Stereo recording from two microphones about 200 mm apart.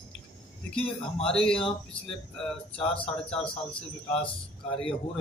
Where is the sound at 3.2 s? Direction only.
5° left (ahead or behind).